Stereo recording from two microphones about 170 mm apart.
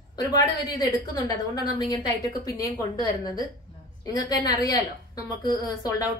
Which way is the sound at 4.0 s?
25° left (ahead or behind).